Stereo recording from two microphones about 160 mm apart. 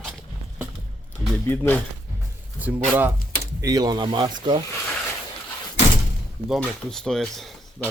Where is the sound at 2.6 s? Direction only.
10° right (ahead or behind).